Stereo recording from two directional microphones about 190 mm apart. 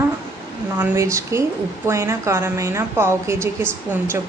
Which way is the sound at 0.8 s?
15° right (ahead or behind).